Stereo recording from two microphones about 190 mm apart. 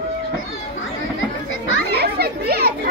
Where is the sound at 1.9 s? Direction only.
55° right (ahead or behind).